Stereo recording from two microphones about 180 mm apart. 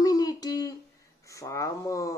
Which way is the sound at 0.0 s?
20° left (ahead or behind).